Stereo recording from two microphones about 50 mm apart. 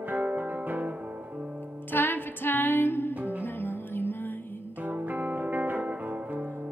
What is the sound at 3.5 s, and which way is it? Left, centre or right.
Music, left.